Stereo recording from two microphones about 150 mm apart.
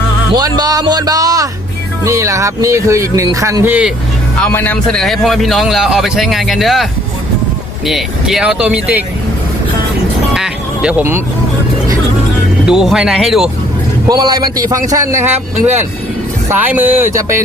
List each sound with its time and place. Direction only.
0.3 s speech: 25° right (ahead or behind); by 3.9 s 10° right (ahead or behind)
4.4 s a man's voice: 10° left (ahead or behind)
7.9 s a man's voice: centre (ahead or behind)
10.3 s speech: 5° right (ahead or behind)
12.6 s a man's voice: 5° right (ahead or behind)
14.1 s speech: 25° right (ahead or behind)